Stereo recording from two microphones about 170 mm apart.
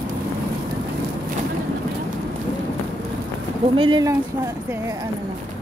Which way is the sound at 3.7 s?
25° right (ahead or behind).